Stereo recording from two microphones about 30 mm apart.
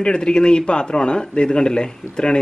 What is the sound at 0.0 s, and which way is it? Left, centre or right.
A man's voice, left.